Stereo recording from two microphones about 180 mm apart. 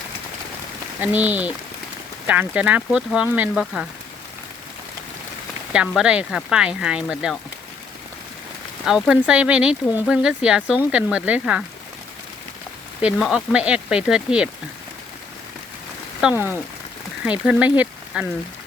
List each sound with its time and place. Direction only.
1.0 s speech: 10° right (ahead or behind)
5.7 s speech: 5° right (ahead or behind)
8.8 s speech: centre (ahead or behind)
13.0 s speech: 5° right (ahead or behind)
16.2 s speech: 5° right (ahead or behind)
17.4 s speech: 5° right (ahead or behind)